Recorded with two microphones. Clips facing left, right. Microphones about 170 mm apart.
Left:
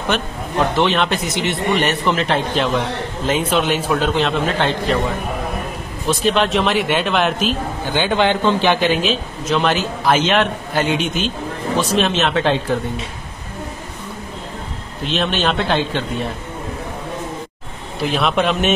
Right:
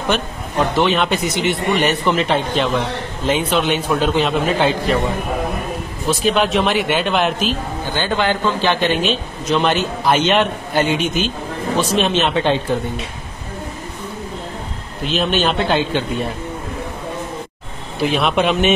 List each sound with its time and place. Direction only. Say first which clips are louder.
0.7 s a man's voice: right 2 dB; centre (ahead or behind)
6.0 s a man's voice: even; centre (ahead or behind)
8.2 s a man's voice: left 3 dB; 20° left (ahead or behind)
8.9 s a man's voice: even; centre (ahead or behind)
15.0 s a man's voice: right 1 dB; centre (ahead or behind)
17.9 s a man's voice: right 1 dB; centre (ahead or behind)